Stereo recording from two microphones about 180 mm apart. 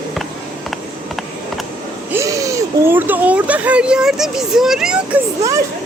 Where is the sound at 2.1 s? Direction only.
15° right (ahead or behind).